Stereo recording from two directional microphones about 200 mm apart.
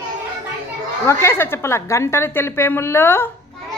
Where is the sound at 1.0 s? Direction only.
15° left (ahead or behind).